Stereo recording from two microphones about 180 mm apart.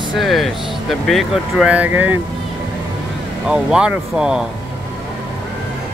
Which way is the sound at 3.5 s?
5° right (ahead or behind).